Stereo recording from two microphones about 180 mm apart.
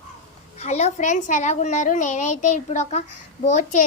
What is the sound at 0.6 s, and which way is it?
A woman's voice, 40° left (ahead or behind).